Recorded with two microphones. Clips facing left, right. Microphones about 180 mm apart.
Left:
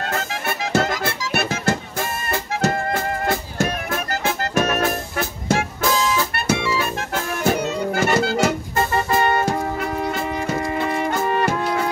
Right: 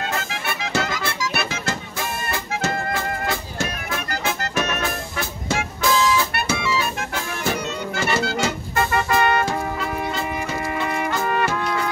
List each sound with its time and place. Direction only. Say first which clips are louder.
0.3 s music: left 4 dB; 45° left (ahead or behind)
8.7 s music: left 1 dB; 25° left (ahead or behind)